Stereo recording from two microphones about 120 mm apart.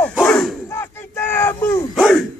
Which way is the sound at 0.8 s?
20° left (ahead or behind).